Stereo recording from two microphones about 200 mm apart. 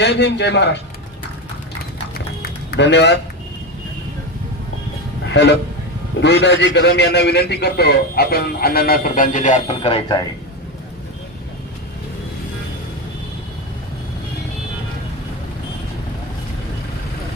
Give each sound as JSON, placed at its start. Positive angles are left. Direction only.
{"t": 0.0, "sound": "a man's voice", "side_deg": 60}
{"t": 2.7, "sound": "a man's voice", "side_deg": 60}
{"t": 5.3, "sound": "a man's voice", "side_deg": 60}